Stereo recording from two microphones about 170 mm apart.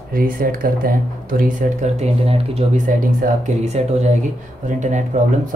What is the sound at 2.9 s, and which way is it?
Speech, 50° right (ahead or behind).